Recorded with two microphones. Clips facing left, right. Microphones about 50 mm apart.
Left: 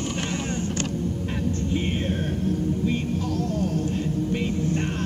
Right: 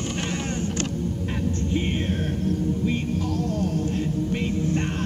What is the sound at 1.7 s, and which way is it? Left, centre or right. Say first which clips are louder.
Music: right 1 dB; centre.